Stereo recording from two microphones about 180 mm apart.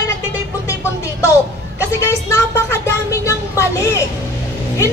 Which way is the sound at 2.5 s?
15° left (ahead or behind).